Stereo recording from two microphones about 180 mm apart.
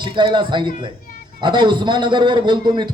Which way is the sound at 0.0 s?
25° right (ahead or behind).